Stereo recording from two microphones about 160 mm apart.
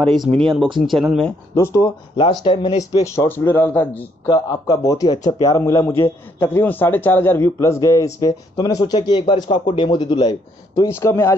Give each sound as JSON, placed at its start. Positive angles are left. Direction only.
{"t": 0.1, "sound": "speech", "side_deg": 0}
{"t": 1.5, "sound": "a man's voice", "side_deg": 20}
{"t": 2.4, "sound": "speech", "side_deg": 30}
{"t": 4.3, "sound": "a man's voice", "side_deg": 20}
{"t": 10.7, "sound": "a man's voice", "side_deg": 15}